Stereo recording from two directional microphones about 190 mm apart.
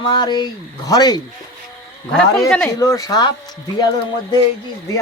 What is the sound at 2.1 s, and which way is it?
Speech, 5° left (ahead or behind).